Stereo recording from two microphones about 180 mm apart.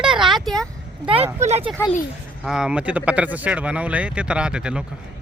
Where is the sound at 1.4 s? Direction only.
35° right (ahead or behind).